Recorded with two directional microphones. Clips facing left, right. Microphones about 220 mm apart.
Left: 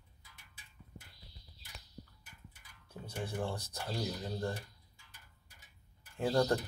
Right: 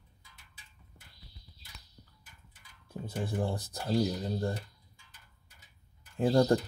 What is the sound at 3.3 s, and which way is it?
Speech, 35° right (ahead or behind).